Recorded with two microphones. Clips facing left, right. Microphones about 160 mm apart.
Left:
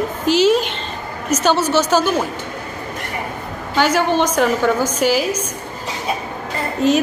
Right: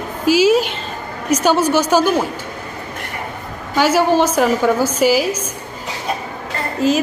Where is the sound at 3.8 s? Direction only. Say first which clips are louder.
Right 2 dB; 5° right (ahead or behind).